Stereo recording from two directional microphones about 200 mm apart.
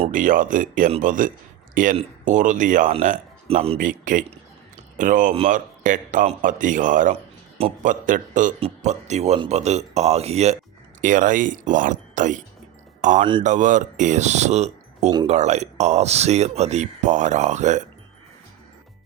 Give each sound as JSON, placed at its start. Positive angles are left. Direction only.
{"t": 0.0, "sound": "speech", "side_deg": -40}